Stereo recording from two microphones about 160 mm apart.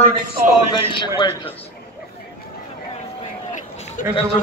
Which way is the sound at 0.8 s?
30° left (ahead or behind).